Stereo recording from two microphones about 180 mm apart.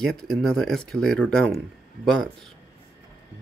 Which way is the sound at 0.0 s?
5° left (ahead or behind).